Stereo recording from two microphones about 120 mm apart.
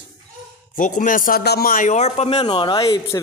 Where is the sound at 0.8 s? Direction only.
90° left; by 2.4 s 60° left (ahead or behind).